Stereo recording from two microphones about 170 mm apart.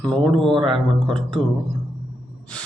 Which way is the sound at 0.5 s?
30° right (ahead or behind).